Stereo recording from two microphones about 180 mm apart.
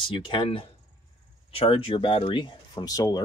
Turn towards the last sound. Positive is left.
turn(degrees=20)  # may be behind; listen again after turning